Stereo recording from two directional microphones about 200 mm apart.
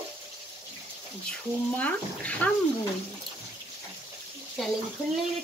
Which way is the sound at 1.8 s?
5° left (ahead or behind).